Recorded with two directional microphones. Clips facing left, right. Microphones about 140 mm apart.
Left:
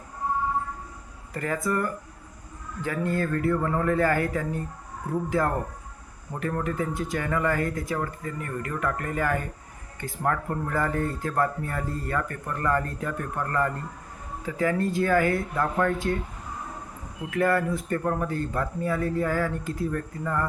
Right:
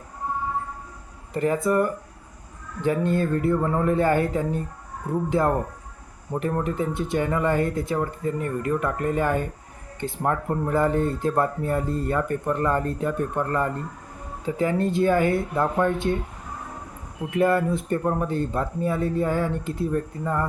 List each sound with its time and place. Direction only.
1.3 s speech: 20° right (ahead or behind)
17.3 s speech: 20° right (ahead or behind)